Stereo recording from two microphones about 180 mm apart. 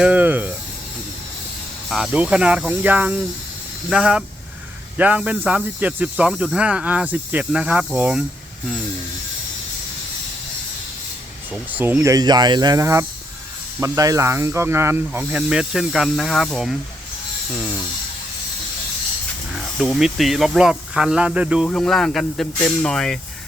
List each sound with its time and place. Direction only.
0.0 s speech: 10° right (ahead or behind)
1.9 s speech: 5° right (ahead or behind)
11.5 s speech: 10° right (ahead or behind)
19.5 s speech: centre (ahead or behind)